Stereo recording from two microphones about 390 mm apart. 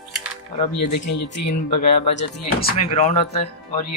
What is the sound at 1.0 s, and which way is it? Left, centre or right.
Speech, left.